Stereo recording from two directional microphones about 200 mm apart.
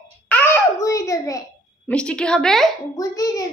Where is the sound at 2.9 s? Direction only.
15° left (ahead or behind).